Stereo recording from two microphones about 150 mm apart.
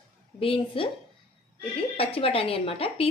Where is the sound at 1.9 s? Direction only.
40° left (ahead or behind).